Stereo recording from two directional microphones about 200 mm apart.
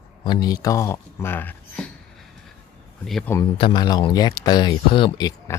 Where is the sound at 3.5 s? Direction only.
25° left (ahead or behind).